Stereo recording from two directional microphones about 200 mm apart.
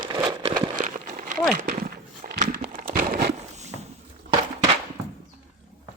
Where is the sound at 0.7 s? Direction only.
40° right (ahead or behind).